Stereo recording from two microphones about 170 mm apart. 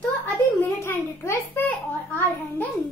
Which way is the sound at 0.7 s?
15° left (ahead or behind).